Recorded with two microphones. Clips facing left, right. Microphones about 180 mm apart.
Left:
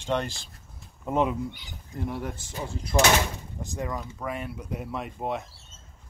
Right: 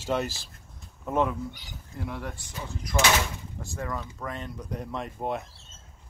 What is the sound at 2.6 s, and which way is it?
Speech, 30° left (ahead or behind).